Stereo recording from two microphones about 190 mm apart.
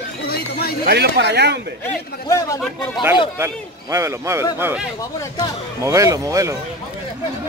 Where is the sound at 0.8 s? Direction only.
60° right (ahead or behind).